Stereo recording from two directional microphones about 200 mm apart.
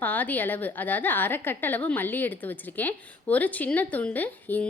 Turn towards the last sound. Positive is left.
turn(degrees=10)  # may be behind; listen again after turning